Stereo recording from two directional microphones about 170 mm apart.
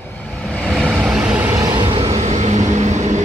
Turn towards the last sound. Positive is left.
turn(degrees=-45)  # may be behind; listen again after turning